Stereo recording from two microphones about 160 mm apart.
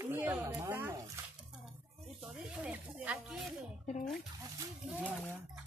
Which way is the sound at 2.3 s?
5° right (ahead or behind).